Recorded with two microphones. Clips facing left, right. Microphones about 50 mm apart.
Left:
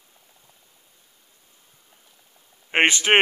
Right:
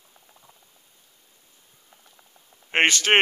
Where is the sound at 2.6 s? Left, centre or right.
Centre.